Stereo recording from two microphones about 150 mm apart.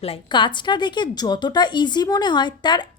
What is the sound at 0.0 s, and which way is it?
A woman's voice, 35° left (ahead or behind).